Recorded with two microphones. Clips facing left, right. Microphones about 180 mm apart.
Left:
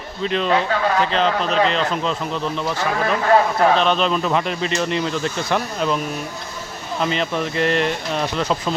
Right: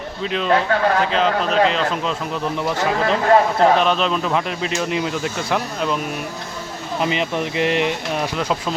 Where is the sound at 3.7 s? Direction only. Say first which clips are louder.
Even; 5° right (ahead or behind).